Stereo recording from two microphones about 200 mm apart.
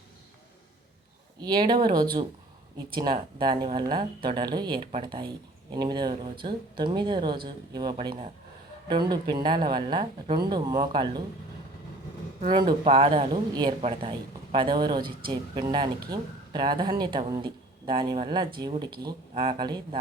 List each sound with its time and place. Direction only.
1.4 s speech: 20° right (ahead or behind)
12.4 s speech: 25° right (ahead or behind)